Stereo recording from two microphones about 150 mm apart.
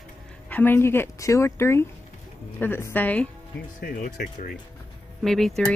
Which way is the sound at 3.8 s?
65° left (ahead or behind).